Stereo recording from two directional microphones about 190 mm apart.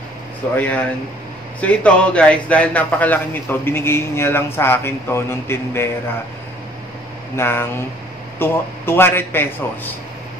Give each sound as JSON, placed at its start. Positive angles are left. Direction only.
{"t": 0.6, "sound": "a man's voice", "side_deg": 10}
{"t": 7.3, "sound": "a man's voice", "side_deg": 10}